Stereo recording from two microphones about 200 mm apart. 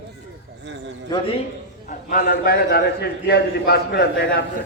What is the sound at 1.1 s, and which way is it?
Speech, 20° left (ahead or behind).